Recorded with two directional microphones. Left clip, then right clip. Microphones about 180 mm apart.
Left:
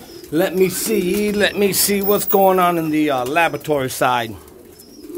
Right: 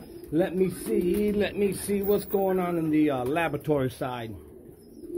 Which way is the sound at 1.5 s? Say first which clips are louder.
Left 10 dB; 35° left (ahead or behind).